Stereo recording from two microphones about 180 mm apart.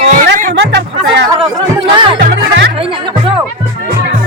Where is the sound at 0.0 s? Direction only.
45° right (ahead or behind).